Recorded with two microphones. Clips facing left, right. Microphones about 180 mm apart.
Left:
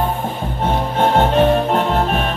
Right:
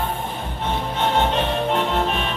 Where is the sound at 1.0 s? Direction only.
45° left (ahead or behind).